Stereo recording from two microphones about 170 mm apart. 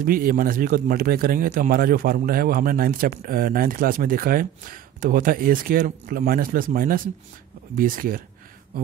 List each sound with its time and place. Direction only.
0.0 s a man's voice: 55° right (ahead or behind)